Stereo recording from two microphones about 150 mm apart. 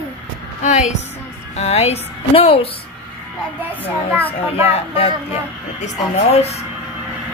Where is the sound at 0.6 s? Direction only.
50° left (ahead or behind).